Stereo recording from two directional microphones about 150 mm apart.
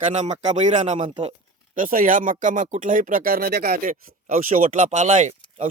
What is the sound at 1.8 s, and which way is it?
Speech, 65° right (ahead or behind).